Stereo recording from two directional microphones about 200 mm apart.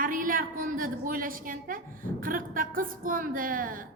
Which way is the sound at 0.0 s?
45° right (ahead or behind).